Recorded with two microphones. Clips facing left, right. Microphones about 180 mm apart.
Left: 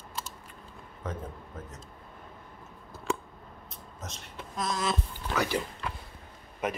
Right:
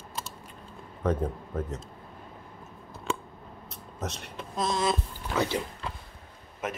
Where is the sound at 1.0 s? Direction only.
70° right (ahead or behind).